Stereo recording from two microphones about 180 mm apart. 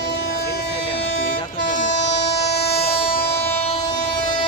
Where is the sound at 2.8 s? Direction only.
30° left (ahead or behind).